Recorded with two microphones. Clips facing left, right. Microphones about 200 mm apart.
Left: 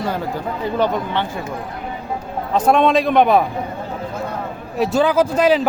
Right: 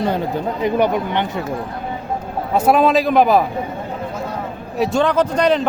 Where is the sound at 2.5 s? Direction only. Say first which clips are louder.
Right 1 dB; 10° right (ahead or behind).